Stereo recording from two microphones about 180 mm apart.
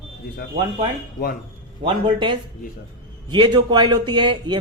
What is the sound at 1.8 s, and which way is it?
A man's voice, 25° right (ahead or behind).